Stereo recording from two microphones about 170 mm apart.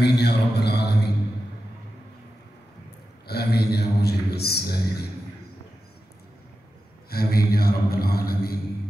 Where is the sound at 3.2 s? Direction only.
70° left (ahead or behind).